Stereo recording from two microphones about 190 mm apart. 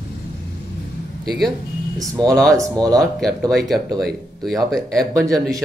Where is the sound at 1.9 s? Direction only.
20° right (ahead or behind).